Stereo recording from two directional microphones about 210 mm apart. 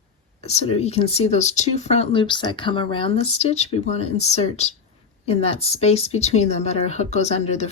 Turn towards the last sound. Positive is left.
turn(degrees=30)  # may be behind; listen again after turning